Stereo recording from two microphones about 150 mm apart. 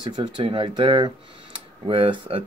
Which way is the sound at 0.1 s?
30° right (ahead or behind).